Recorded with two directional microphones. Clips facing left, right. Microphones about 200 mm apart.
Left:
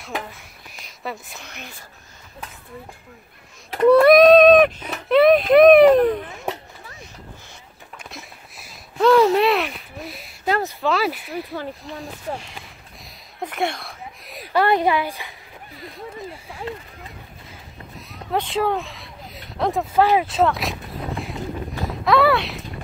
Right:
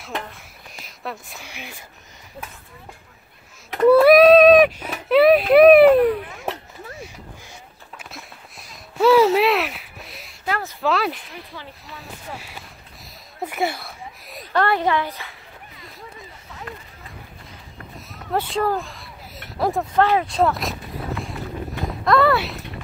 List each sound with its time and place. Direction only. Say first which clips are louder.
0.0 s speech: left 1 dB; 5° left (ahead or behind)
3.9 s speech: even; 5° right (ahead or behind)
8.0 s a sound: left 1 dB; centre (ahead or behind)
10.8 s speech: even; centre (ahead or behind)
11.3 s speech: left 9 dB; 45° left (ahead or behind)
13.4 s a sound: even; 5° right (ahead or behind)
14.6 s a woman's voice: left 2 dB; 10° left (ahead or behind)
16.4 s speech: left 4 dB; 30° left (ahead or behind)
18.1 s a sound: even; centre (ahead or behind)
19.6 s a woman's voice: left 1 dB; 5° left (ahead or behind)
22.0 s speech: even; centre (ahead or behind)